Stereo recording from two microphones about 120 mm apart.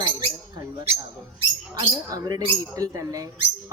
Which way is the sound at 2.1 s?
35° right (ahead or behind).